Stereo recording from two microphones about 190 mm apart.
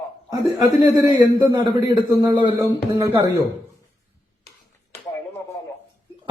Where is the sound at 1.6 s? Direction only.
25° right (ahead or behind).